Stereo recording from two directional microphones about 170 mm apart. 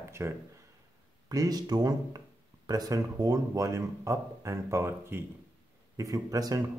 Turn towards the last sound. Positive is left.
turn(degrees=-20)  # may be behind; listen again after turning